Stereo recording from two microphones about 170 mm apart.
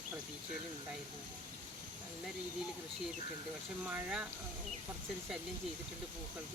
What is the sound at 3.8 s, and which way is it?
Speech, 5° right (ahead or behind).